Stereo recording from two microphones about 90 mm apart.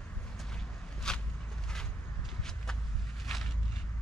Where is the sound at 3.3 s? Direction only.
Centre (ahead or behind).